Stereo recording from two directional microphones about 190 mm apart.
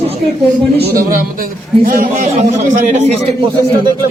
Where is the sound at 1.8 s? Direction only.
40° right (ahead or behind).